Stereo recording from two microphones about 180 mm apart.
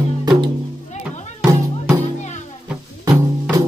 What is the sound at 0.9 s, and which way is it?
Music, 40° left (ahead or behind).